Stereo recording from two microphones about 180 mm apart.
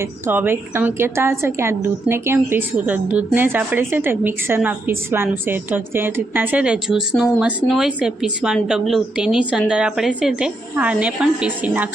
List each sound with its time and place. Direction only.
0.0 s a woman's voice: 10° right (ahead or behind)